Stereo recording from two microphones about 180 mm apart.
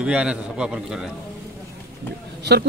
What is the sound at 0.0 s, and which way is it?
Speech, 5° right (ahead or behind).